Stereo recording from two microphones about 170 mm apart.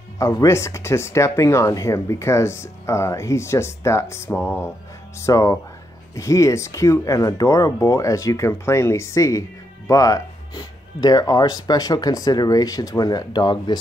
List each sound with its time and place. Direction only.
0.2 s speech: 20° left (ahead or behind)